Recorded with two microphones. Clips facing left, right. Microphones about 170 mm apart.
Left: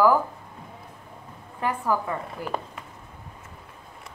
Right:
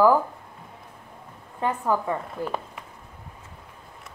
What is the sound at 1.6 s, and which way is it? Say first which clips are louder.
Speech: right 1 dB; 25° right (ahead or behind).